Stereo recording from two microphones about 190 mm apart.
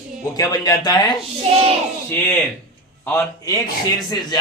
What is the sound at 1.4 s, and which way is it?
Speech, 30° right (ahead or behind).